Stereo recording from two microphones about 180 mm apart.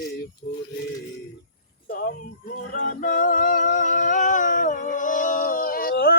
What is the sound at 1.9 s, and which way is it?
Music, 55° left (ahead or behind).